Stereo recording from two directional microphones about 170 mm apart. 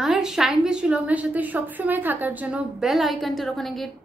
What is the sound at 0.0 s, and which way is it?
A woman's voice, centre (ahead or behind).